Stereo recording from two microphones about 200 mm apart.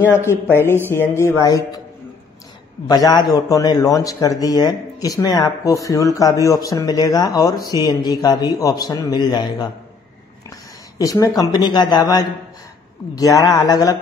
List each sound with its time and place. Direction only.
0.1 s speech: 10° left (ahead or behind)
2.9 s speech: 20° left (ahead or behind)
11.0 s speech: 15° left (ahead or behind)